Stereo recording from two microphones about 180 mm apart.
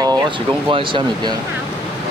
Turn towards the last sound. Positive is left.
turn(degrees=-25)  # may be behind; listen again after turning